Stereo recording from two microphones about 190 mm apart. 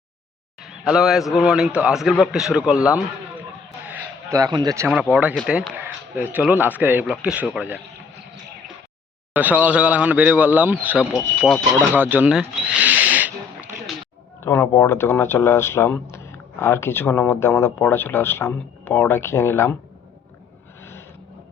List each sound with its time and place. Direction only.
0.6 s a sound: centre (ahead or behind)
1.3 s a man's voice: centre (ahead or behind)
3.8 s a sound: 10° right (ahead or behind)
5.1 s speech: 5° right (ahead or behind)
9.3 s a man's voice: 10° right (ahead or behind)
11.9 s speech: 10° right (ahead or behind)
14.4 s speech: 15° left (ahead or behind)